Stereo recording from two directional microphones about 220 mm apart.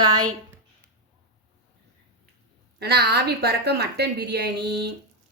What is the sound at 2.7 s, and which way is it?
A woman's voice, 45° right (ahead or behind).